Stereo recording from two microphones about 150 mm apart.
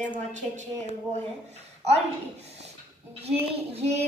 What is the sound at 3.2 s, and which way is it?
Speech, 45° right (ahead or behind).